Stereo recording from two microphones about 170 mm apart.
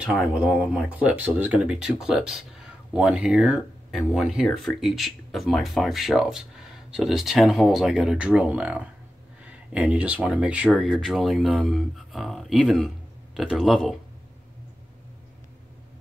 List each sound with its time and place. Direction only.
0.0 s speech: 5° right (ahead or behind)